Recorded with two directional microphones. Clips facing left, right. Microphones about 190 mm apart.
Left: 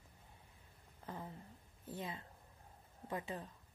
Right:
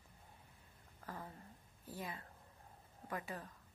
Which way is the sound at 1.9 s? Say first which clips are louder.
Left 2 dB; 25° left (ahead or behind).